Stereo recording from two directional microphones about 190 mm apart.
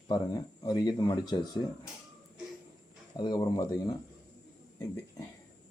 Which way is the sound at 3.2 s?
20° left (ahead or behind).